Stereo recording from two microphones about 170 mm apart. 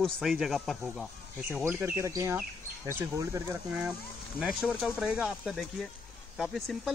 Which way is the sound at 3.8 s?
5° right (ahead or behind).